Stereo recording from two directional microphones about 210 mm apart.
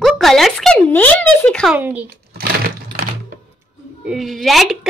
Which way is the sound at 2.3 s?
45° right (ahead or behind).